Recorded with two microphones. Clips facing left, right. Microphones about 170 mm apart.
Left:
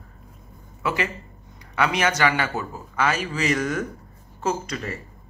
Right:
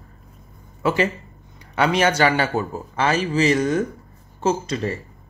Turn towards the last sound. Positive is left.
turn(degrees=-30)  # may be behind; listen again after turning